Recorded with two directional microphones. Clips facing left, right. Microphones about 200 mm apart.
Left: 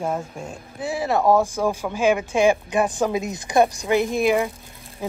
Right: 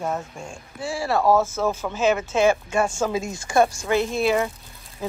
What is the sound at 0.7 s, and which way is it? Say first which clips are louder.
Speech: left 1 dB; 20° left (ahead or behind).